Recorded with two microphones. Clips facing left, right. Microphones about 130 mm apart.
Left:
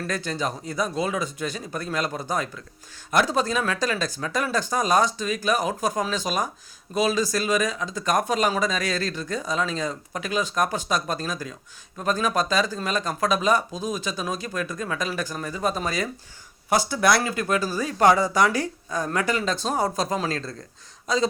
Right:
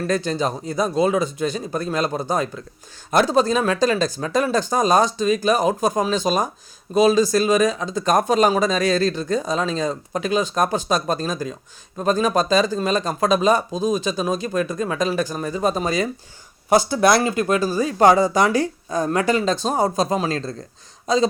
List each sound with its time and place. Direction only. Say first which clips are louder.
0.1 s speech: right 6 dB; 25° right (ahead or behind)